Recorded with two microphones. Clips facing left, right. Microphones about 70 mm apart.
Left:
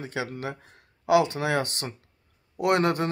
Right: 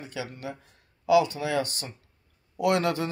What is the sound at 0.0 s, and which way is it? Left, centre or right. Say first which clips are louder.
Speech: left 4 dB; left.